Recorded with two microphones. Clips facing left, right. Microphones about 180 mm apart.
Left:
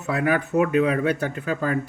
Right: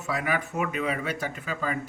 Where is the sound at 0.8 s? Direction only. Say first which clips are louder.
Left 7 dB; 55° left (ahead or behind).